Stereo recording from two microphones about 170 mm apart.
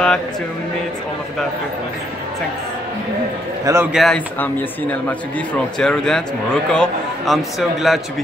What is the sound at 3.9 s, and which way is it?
Speech, centre (ahead or behind).